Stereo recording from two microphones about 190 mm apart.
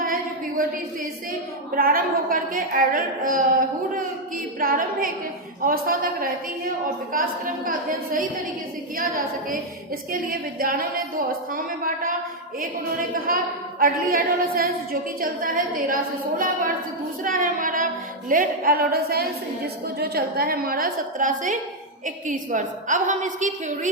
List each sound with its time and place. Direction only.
0.0 s a sound: 50° right (ahead or behind)
1.7 s a woman's voice: 50° right (ahead or behind)
4.6 s a woman's voice: 50° right (ahead or behind)
10.1 s a woman's voice: 50° right (ahead or behind)
13.2 s a woman's voice: 50° right (ahead or behind)